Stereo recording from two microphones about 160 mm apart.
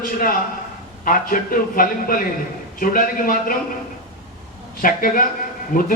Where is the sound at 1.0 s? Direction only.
60° left (ahead or behind).